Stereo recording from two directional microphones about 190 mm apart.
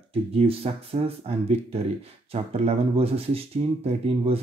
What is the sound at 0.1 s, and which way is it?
Speech, 30° right (ahead or behind).